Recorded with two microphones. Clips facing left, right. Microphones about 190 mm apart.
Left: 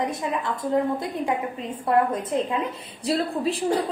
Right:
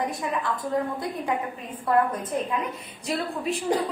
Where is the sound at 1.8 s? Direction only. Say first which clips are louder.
Left 1 dB; 30° left (ahead or behind).